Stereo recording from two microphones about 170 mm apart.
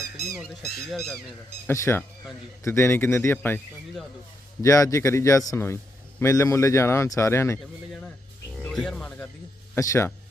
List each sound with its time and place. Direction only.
0.0 s a sound: 65° left (ahead or behind)
1.6 s a man's voice: 15° left (ahead or behind)
4.6 s a man's voice: 20° left (ahead or behind)
8.6 s a man's voice: 5° left (ahead or behind)